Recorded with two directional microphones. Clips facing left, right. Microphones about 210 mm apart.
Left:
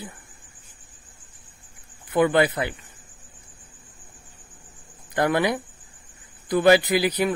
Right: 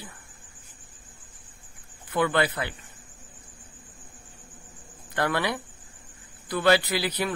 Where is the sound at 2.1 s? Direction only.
20° left (ahead or behind).